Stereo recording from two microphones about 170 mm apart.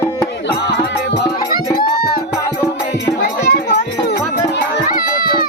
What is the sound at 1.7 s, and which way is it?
Music, 60° left (ahead or behind).